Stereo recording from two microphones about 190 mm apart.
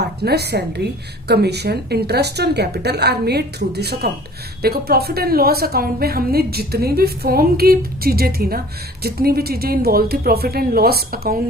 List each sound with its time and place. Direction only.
0.0 s a woman's voice: 60° right (ahead or behind)